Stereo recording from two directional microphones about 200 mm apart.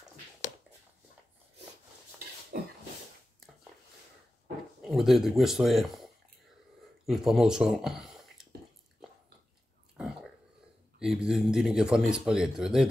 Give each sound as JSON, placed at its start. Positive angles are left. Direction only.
{"t": 2.5, "sound": "a sound", "side_deg": -50}
{"t": 4.8, "sound": "speech", "side_deg": 0}
{"t": 7.1, "sound": "speech", "side_deg": 0}
{"t": 11.0, "sound": "speech", "side_deg": -5}